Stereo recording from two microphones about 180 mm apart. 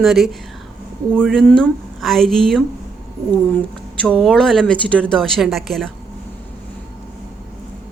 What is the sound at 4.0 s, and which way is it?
Speech, 5° left (ahead or behind).